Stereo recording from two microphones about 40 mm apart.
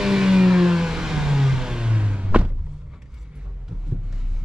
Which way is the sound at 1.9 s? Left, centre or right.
Right.